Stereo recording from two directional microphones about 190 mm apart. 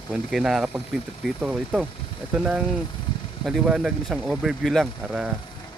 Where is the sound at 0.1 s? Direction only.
5° right (ahead or behind).